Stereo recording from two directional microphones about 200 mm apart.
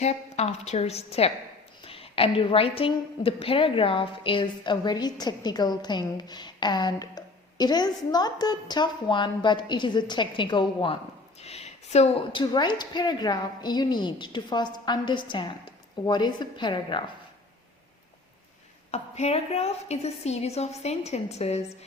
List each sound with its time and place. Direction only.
0.0 s a woman's voice: 35° left (ahead or behind)
18.9 s a woman's voice: 30° left (ahead or behind)